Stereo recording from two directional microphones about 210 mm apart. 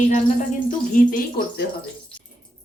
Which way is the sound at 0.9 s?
40° left (ahead or behind).